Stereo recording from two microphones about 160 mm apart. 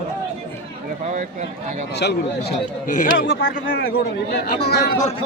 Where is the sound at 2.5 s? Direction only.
55° left (ahead or behind); by 4.9 s 85° left.